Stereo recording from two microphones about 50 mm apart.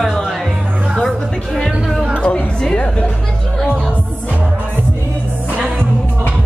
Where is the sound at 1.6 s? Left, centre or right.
Centre.